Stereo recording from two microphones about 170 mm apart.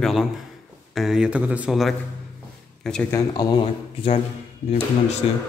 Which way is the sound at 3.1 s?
25° left (ahead or behind).